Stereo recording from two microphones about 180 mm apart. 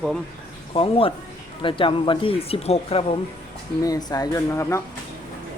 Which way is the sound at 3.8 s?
20° left (ahead or behind).